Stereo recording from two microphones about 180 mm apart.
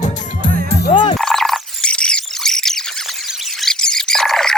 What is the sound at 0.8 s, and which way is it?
Music, 25° left (ahead or behind).